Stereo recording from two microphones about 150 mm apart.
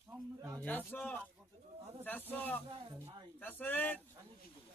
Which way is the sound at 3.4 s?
10° left (ahead or behind).